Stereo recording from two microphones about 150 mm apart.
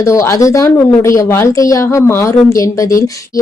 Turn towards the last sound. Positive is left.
turn(degrees=20)  # may be behind; listen again after turning